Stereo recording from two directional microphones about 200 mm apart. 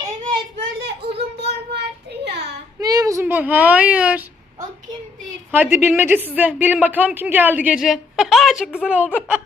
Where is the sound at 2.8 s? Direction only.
20° right (ahead or behind).